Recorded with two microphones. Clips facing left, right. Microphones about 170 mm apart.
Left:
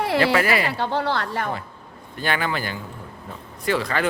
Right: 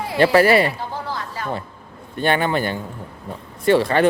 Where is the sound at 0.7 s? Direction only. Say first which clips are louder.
Left 5 dB; 75° left (ahead or behind).